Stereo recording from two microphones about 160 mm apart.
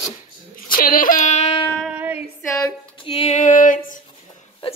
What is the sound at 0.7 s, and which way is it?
Speech, 65° left (ahead or behind).